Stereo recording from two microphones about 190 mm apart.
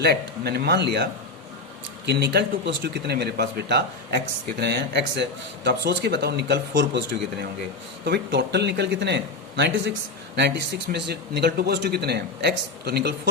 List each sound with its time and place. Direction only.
0.0 s a man's voice: 55° right (ahead or behind)
2.0 s a man's voice: 60° right (ahead or behind)